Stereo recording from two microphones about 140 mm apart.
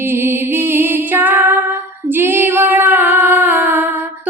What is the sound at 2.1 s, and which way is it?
Female singing, 15° right (ahead or behind).